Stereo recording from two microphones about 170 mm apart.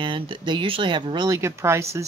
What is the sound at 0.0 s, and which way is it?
Speech, 30° right (ahead or behind).